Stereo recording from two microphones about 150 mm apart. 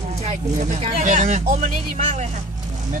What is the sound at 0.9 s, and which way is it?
Speech, 55° right (ahead or behind).